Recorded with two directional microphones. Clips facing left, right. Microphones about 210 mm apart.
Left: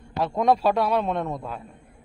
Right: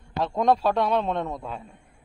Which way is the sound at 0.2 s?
5° left (ahead or behind).